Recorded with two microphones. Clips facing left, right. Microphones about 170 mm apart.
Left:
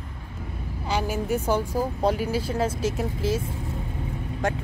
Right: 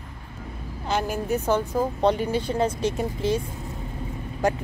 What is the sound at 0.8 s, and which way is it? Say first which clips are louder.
Speech: right 1 dB; 10° left (ahead or behind).